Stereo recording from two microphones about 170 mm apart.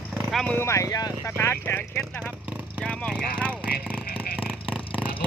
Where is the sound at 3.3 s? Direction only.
5° left (ahead or behind).